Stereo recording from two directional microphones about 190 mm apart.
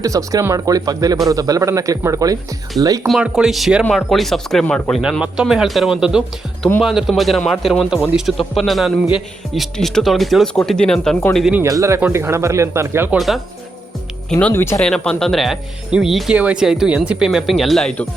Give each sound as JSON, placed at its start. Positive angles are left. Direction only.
{"t": 0.0, "sound": "speech", "side_deg": -15}
{"t": 3.1, "sound": "speech", "side_deg": -5}
{"t": 11.6, "sound": "speech", "side_deg": -15}
{"t": 13.1, "sound": "speech", "side_deg": 0}